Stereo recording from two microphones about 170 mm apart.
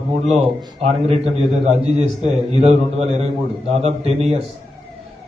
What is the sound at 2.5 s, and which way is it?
A man's voice, 35° right (ahead or behind).